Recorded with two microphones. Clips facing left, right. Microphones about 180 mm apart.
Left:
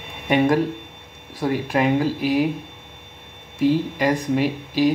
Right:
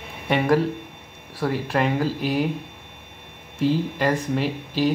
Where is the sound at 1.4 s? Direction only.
10° left (ahead or behind).